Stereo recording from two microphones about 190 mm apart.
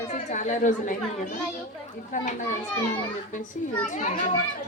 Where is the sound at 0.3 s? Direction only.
40° left (ahead or behind).